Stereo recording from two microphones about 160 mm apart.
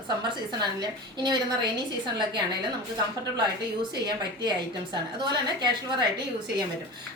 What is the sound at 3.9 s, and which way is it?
A woman's voice, 25° right (ahead or behind).